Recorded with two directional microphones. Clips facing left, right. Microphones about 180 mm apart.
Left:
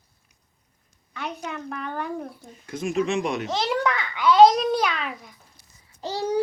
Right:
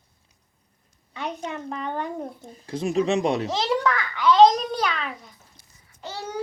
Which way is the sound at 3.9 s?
15° left (ahead or behind).